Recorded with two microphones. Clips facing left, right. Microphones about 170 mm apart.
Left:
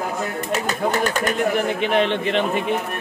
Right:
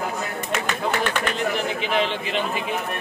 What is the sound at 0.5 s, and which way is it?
Speech, 40° left (ahead or behind).